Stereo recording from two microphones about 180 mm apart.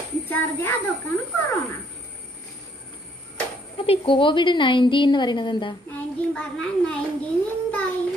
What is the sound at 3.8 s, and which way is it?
A woman's voice, 30° left (ahead or behind).